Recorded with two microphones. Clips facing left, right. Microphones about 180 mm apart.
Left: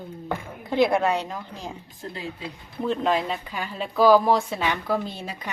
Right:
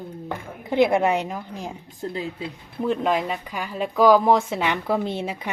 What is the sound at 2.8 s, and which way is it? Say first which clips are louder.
A woman's voice: right 1 dB; 10° right (ahead or behind).